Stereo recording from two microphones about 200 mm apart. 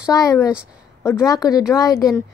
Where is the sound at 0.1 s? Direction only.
15° left (ahead or behind).